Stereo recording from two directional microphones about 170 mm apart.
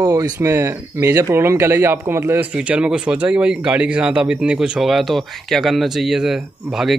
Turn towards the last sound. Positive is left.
turn(degrees=0)  # may be behind; listen again after turning